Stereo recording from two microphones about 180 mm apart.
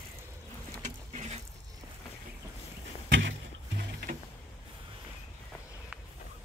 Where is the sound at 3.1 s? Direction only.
85° right; by 4.2 s 65° right (ahead or behind).